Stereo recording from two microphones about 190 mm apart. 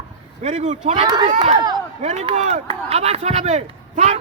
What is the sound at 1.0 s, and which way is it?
Speech, 20° right (ahead or behind).